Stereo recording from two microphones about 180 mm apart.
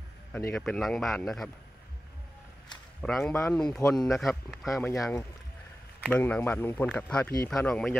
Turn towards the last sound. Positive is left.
turn(degrees=5)  # may be behind; listen again after turning